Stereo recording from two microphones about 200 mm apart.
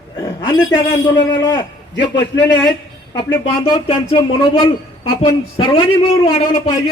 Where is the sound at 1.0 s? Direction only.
20° left (ahead or behind).